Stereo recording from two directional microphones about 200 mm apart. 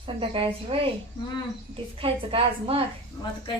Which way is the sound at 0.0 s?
25° right (ahead or behind).